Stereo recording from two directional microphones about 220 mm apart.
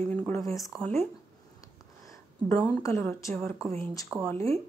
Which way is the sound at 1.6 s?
15° left (ahead or behind).